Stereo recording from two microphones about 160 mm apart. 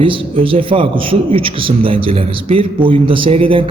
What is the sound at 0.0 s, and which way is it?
A man's voice, 35° right (ahead or behind).